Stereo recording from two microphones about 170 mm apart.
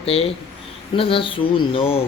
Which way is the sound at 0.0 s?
35° left (ahead or behind).